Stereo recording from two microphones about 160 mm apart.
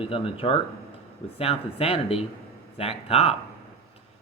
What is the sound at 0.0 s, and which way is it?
Speech, 35° left (ahead or behind).